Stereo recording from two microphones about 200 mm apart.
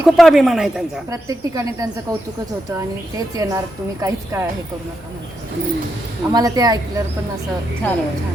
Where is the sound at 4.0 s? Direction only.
15° right (ahead or behind).